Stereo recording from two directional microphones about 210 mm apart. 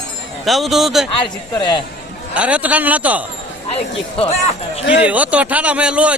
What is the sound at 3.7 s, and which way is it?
Speech, 30° left (ahead or behind).